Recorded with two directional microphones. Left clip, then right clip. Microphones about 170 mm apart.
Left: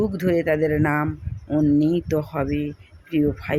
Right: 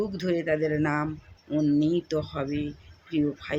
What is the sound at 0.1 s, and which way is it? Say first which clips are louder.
Speech: left 6 dB; 40° left (ahead or behind).